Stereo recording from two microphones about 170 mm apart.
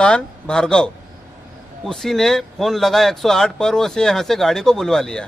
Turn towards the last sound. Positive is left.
turn(degrees=5)  # may be behind; listen again after turning